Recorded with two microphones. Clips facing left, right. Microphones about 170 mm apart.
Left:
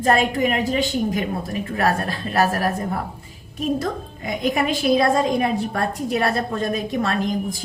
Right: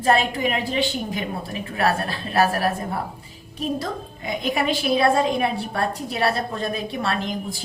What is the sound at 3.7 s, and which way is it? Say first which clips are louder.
A woman's voice: left 3 dB; 45° left (ahead or behind).